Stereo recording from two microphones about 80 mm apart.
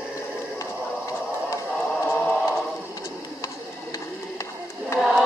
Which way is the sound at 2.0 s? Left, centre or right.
Centre.